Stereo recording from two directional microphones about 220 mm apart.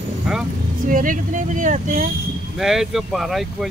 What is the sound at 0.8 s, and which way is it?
Speech, 35° right (ahead or behind).